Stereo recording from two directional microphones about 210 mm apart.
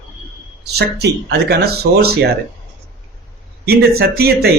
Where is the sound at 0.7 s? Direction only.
50° right (ahead or behind).